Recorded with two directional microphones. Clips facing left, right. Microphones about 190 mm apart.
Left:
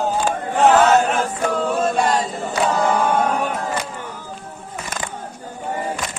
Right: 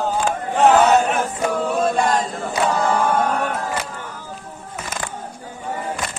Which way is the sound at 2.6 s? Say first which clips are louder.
Left 1 dB; 5° left (ahead or behind).